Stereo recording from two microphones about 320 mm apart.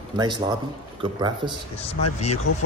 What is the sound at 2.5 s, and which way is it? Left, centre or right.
Speech, left.